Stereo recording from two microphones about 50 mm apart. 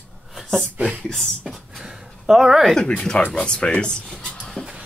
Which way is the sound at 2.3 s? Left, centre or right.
Centre.